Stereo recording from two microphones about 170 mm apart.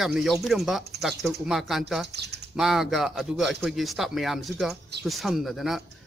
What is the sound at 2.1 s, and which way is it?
Speech, 80° right.